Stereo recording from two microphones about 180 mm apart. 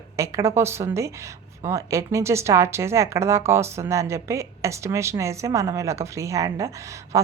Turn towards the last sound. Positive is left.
turn(degrees=-15)  # may be behind; listen again after turning